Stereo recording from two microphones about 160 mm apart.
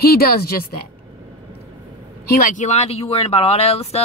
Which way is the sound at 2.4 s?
50° left (ahead or behind).